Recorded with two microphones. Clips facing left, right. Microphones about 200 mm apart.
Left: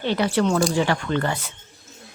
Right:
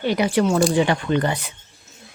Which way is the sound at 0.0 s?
15° right (ahead or behind).